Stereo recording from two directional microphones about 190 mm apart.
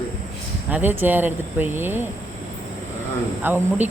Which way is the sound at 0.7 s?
10° right (ahead or behind).